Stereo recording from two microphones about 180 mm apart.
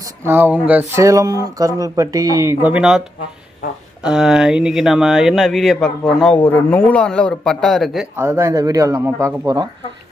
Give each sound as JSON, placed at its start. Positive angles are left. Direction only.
{"t": 0.3, "sound": "speech", "side_deg": -10}
{"t": 4.0, "sound": "speech", "side_deg": -5}
{"t": 8.1, "sound": "speech", "side_deg": -15}